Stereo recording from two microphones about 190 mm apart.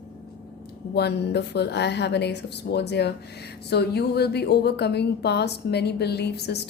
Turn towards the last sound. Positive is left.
turn(degrees=60)  # may be behind; listen again after turning